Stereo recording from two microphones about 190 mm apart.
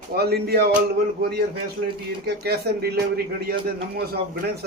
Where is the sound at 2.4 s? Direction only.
55° right (ahead or behind).